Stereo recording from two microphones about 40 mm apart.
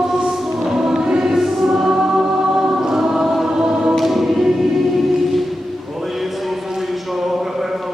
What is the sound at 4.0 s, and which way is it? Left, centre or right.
Choir, centre.